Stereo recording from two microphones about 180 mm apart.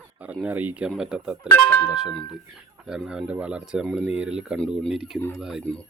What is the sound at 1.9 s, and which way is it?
Speech, 5° right (ahead or behind).